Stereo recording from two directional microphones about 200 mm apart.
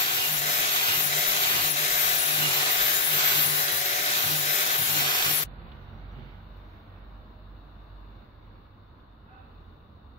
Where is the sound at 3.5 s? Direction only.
35° left (ahead or behind).